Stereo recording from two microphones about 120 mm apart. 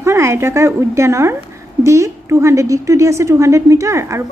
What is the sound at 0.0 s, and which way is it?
A woman's voice, 20° right (ahead or behind).